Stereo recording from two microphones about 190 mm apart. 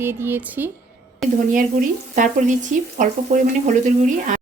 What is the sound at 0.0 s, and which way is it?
Speech, 10° right (ahead or behind).